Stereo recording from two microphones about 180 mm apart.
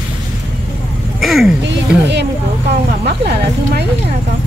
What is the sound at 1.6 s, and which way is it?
Speech, 75° right (ahead or behind).